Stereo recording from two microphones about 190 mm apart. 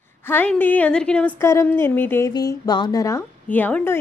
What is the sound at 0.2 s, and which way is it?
A woman's voice, 10° left (ahead or behind).